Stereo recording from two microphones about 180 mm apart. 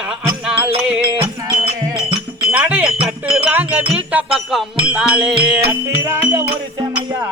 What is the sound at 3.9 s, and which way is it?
Music, 5° right (ahead or behind).